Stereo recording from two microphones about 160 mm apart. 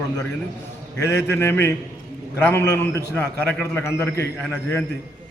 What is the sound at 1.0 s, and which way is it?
A man's voice, 15° left (ahead or behind).